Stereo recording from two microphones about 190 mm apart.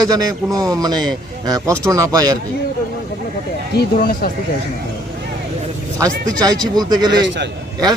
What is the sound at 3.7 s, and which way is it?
Speech, 50° left (ahead or behind).